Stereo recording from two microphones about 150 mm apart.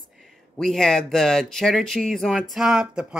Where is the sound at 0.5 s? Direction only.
5° left (ahead or behind).